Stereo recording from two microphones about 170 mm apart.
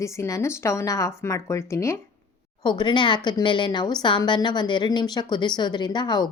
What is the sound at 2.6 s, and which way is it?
A woman's voice, 25° left (ahead or behind).